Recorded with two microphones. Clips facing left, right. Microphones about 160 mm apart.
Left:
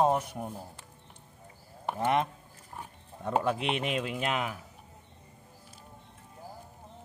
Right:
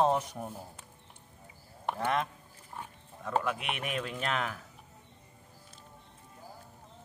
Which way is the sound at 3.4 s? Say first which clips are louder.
Left 5 dB; 30° left (ahead or behind).